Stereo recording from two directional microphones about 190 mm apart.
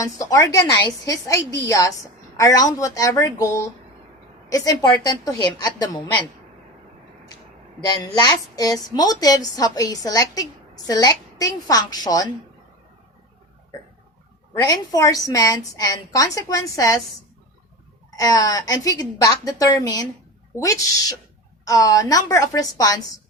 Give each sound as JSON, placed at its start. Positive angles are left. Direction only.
{"t": 0.0, "sound": "a woman's voice", "side_deg": 20}
{"t": 8.2, "sound": "a woman's voice", "side_deg": 20}
{"t": 14.5, "sound": "a woman's voice", "side_deg": 20}
{"t": 18.2, "sound": "a woman's voice", "side_deg": 20}